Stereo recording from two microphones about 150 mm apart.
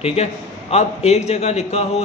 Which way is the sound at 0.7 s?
45° left (ahead or behind).